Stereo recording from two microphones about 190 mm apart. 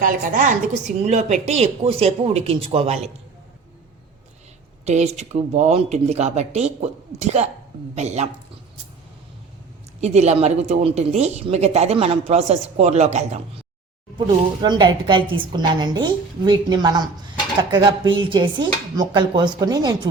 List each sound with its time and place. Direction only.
0.0 s a woman's voice: 45° right (ahead or behind)
4.9 s a woman's voice: 35° right (ahead or behind)
10.0 s a woman's voice: 35° right (ahead or behind)
14.6 s a woman's voice: 25° right (ahead or behind)